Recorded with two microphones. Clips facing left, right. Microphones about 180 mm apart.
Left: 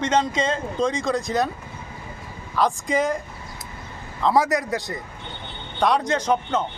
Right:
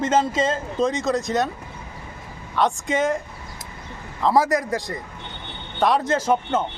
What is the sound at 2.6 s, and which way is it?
Speech, centre (ahead or behind).